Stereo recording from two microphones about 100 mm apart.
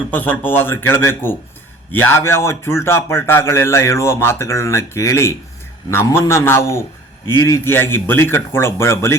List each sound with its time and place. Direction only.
0.1 s a man's voice: 20° left (ahead or behind)